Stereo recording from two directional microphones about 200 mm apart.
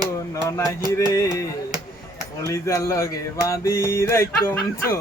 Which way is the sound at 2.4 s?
15° left (ahead or behind).